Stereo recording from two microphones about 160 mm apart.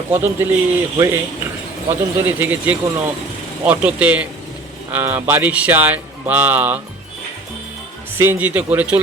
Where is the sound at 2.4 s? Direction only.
10° right (ahead or behind).